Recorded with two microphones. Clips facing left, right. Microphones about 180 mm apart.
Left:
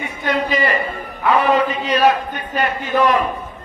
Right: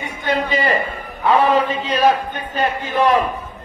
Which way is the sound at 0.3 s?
30° right (ahead or behind).